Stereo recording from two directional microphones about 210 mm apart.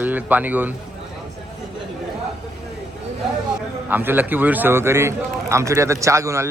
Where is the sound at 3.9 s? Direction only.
10° right (ahead or behind).